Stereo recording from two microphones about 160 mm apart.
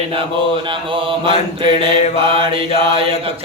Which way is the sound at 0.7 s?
30° right (ahead or behind).